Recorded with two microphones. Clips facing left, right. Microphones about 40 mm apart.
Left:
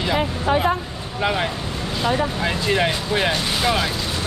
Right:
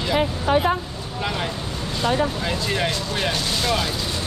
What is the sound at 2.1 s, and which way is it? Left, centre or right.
Speech, centre.